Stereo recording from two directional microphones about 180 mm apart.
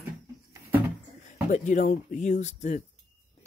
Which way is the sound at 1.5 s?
45° left (ahead or behind).